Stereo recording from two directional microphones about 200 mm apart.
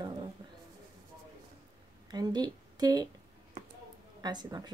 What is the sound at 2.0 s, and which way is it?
A woman's voice, 20° right (ahead or behind).